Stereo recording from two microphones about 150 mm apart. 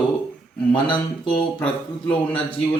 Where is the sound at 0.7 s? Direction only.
30° left (ahead or behind).